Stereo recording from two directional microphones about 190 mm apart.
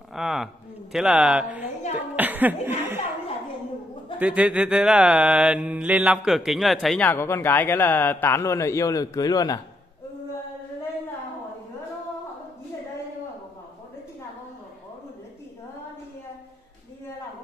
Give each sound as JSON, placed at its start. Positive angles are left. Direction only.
{"t": 0.1, "sound": "a sound", "side_deg": 0}
{"t": 0.9, "sound": "a man's voice", "side_deg": -5}
{"t": 2.1, "sound": "chuckle", "side_deg": -10}
{"t": 4.2, "sound": "mantra", "side_deg": -5}
{"t": 7.1, "sound": "a man's voice", "side_deg": 15}